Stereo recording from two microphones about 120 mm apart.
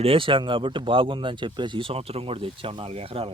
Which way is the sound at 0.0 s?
50° right (ahead or behind).